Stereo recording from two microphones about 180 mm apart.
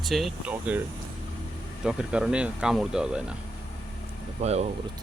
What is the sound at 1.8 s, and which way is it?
Speech, 5° right (ahead or behind).